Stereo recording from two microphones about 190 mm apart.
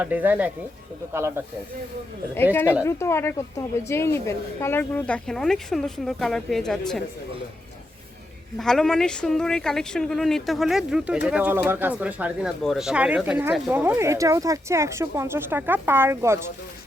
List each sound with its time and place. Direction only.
0.0 s speech: 10° right (ahead or behind)
2.3 s a woman's voice: 10° left (ahead or behind)
8.5 s speech: centre (ahead or behind); by 16.4 s 15° right (ahead or behind)